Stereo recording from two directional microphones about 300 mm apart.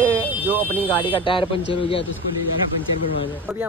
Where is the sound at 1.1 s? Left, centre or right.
Centre.